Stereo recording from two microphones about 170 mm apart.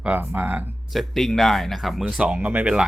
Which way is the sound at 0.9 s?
Centre (ahead or behind).